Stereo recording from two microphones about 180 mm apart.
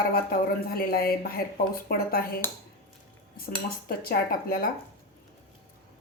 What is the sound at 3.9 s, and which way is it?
Speech, 55° left (ahead or behind).